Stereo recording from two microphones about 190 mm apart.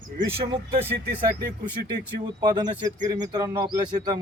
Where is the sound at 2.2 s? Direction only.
20° right (ahead or behind).